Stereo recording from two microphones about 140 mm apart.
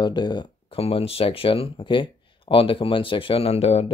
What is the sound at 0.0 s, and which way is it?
Speech, 30° left (ahead or behind).